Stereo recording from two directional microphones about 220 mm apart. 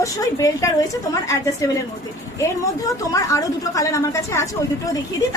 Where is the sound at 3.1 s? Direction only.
15° left (ahead or behind).